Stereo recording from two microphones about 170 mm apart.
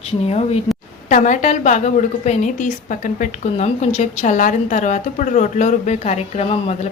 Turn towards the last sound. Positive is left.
turn(degrees=40)  # may be behind; listen again after turning